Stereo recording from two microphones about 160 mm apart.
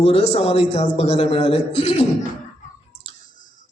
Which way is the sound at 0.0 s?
40° left (ahead or behind).